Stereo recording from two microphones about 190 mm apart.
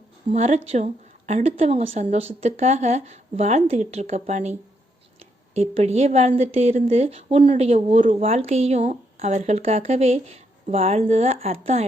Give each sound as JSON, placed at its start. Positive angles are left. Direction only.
{"t": 0.3, "sound": "a woman's voice", "side_deg": -35}
{"t": 5.5, "sound": "a woman's voice", "side_deg": -35}